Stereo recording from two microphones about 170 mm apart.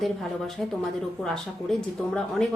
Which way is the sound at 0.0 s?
Centre (ahead or behind).